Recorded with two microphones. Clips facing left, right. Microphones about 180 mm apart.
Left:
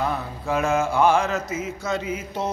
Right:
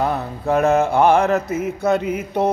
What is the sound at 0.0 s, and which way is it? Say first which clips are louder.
Mantra: right 5 dB; 55° right (ahead or behind).